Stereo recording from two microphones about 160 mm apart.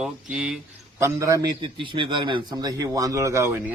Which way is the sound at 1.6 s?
30° right (ahead or behind).